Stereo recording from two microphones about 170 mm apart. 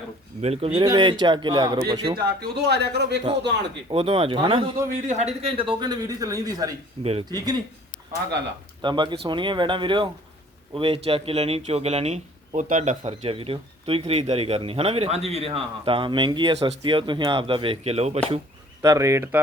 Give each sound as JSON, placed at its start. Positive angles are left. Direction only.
{"t": 0.4, "sound": "speech", "side_deg": -35}
{"t": 0.9, "sound": "speech", "side_deg": -25}
{"t": 2.1, "sound": "speech", "side_deg": -70}
{"t": 3.8, "sound": "speech", "side_deg": -35}
{"t": 5.0, "sound": "speech", "side_deg": -40}
{"t": 7.0, "sound": "speech", "side_deg": -35}
{"t": 7.3, "sound": "speech", "side_deg": -25}
{"t": 8.8, "sound": "speech", "side_deg": -25}
{"t": 18.8, "sound": "speech", "side_deg": -20}